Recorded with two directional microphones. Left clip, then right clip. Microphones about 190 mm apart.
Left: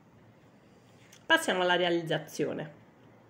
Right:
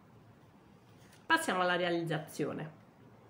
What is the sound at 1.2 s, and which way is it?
Speech, 15° left (ahead or behind).